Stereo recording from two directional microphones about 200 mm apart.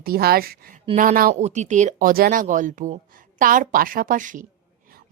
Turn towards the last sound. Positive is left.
turn(degrees=-40)  # may be behind; listen again after turning